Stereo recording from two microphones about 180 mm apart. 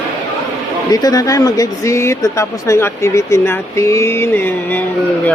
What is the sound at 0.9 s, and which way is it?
Speech, 20° left (ahead or behind).